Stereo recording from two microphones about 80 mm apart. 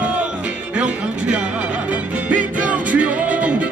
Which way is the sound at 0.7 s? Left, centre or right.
Centre.